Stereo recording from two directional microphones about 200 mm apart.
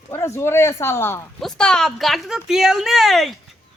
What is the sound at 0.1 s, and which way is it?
A woman's voice, 10° left (ahead or behind).